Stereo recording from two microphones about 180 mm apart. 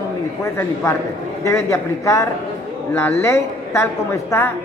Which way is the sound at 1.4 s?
15° left (ahead or behind).